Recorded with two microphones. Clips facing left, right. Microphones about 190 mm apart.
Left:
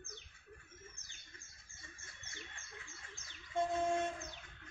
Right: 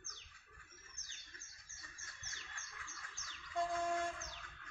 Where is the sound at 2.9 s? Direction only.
25° left (ahead or behind).